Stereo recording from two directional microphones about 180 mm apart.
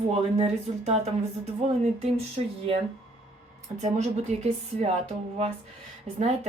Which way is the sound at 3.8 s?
40° right (ahead or behind).